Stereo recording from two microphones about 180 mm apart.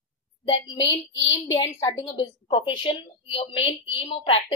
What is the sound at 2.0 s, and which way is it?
A woman's voice, 30° left (ahead or behind).